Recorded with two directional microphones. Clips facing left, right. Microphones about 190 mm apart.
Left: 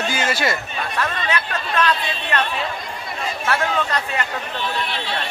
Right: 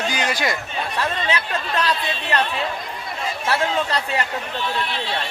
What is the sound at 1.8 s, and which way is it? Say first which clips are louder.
Speech: left 4 dB; 35° right (ahead or behind).